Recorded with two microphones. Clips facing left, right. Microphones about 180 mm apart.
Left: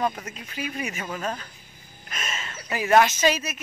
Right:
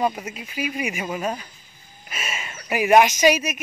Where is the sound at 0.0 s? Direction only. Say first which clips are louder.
Right 3 dB; 10° right (ahead or behind).